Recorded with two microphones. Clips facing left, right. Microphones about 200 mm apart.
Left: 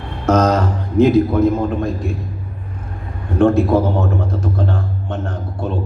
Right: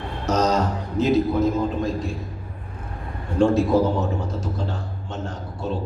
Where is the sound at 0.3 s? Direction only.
55° left (ahead or behind).